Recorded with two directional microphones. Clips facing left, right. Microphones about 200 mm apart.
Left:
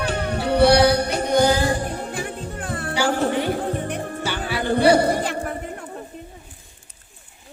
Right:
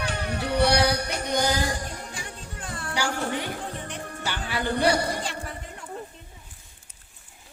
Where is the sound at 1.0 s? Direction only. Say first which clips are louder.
Left 8 dB; 30° left (ahead or behind).